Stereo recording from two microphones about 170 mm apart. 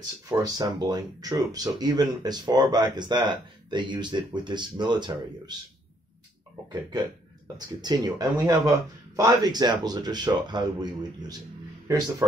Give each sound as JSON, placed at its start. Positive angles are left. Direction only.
{"t": 0.3, "sound": "speech", "side_deg": -20}
{"t": 7.5, "sound": "speech", "side_deg": -25}